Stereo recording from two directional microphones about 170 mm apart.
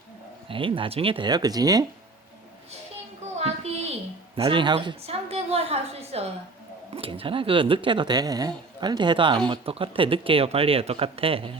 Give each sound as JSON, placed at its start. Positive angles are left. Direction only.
{"t": 0.4, "sound": "speech", "side_deg": -30}
{"t": 3.2, "sound": "a sound", "side_deg": -40}
{"t": 6.9, "sound": "speech", "side_deg": -35}